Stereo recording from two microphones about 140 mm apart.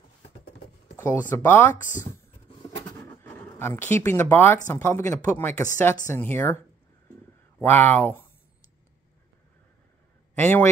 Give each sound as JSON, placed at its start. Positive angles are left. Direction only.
{"t": 0.9, "sound": "a sound", "side_deg": 15}
{"t": 1.3, "sound": "speech", "side_deg": 15}
{"t": 3.3, "sound": "speech", "side_deg": 15}
{"t": 7.6, "sound": "speech", "side_deg": 15}
{"t": 10.3, "sound": "speech", "side_deg": 15}